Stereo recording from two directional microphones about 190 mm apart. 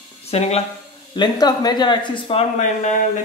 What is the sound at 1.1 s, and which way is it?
Speech, 20° left (ahead or behind).